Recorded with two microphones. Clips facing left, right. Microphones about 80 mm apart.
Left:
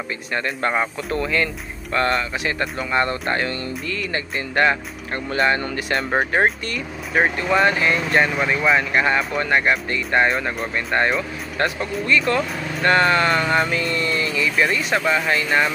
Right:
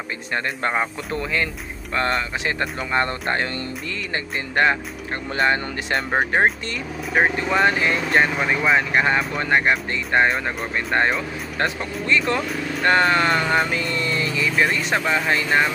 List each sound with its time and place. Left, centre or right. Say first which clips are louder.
0.6 s speech: left 1 dB; right
5.9 s speech: even; centre
7.6 s speech: left 1 dB; right